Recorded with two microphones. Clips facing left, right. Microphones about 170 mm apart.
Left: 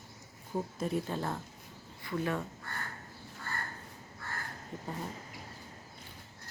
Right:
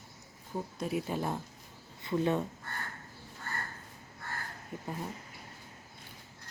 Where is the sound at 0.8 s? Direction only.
10° right (ahead or behind).